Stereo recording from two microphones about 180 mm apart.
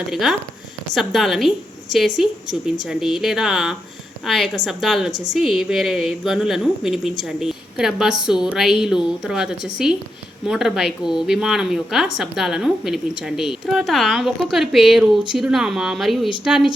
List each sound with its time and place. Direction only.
0.1 s a woman's voice: centre (ahead or behind)